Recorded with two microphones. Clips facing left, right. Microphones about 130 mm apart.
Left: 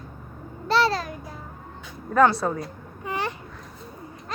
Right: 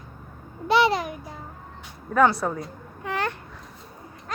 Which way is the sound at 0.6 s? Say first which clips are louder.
Right 2 dB; 15° right (ahead or behind).